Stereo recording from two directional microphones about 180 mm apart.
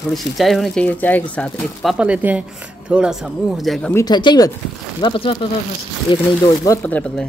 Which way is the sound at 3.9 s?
20° left (ahead or behind).